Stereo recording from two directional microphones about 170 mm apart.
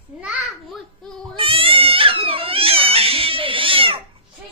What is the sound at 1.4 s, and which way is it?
Cat, 30° right (ahead or behind).